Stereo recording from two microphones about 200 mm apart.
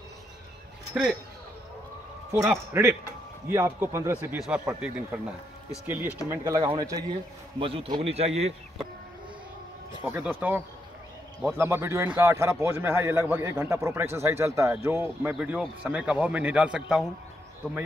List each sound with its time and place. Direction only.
1.0 s speech: 5° right (ahead or behind)
2.8 s a man's voice: 10° right (ahead or behind); by 8.5 s 30° right (ahead or behind)
10.0 s a man's voice: 10° right (ahead or behind)